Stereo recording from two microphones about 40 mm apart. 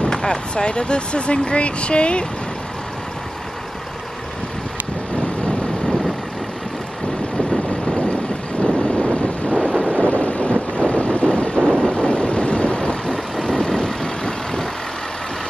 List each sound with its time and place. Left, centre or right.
0.0 s speech: centre
8.6 s vehicle: left
9.5 s wind noise: right
9.8 s vehicle: left
11.6 s vehicle: centre
11.9 s vehicle: left